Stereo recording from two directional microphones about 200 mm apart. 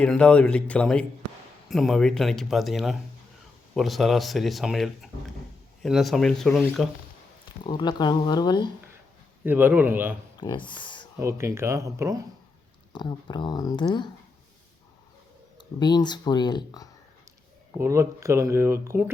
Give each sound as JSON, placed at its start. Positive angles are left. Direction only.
{"t": 0.0, "sound": "speech", "side_deg": 5}
{"t": 7.6, "sound": "speech", "side_deg": 20}
{"t": 9.4, "sound": "speech", "side_deg": -10}
{"t": 10.3, "sound": "speech", "side_deg": 25}
{"t": 11.2, "sound": "speech", "side_deg": -15}
{"t": 12.9, "sound": "speech", "side_deg": 20}
{"t": 15.5, "sound": "speech", "side_deg": 20}
{"t": 17.7, "sound": "speech", "side_deg": -15}